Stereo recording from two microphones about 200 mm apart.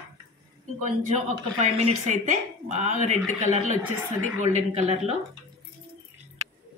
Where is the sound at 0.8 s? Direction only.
35° right (ahead or behind).